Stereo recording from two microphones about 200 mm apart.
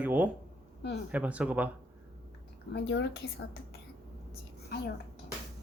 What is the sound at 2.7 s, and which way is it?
Speech, 60° left (ahead or behind).